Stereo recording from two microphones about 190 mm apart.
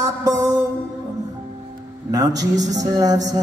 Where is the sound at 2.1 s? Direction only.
20° right (ahead or behind).